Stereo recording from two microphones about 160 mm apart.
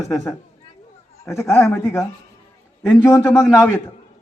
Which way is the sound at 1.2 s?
15° left (ahead or behind).